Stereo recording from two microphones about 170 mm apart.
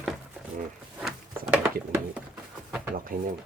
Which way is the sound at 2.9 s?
55° right (ahead or behind).